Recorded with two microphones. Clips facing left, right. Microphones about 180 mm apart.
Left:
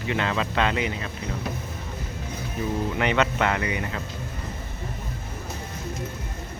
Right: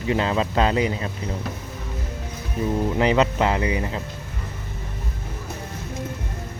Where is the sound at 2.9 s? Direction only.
30° right (ahead or behind).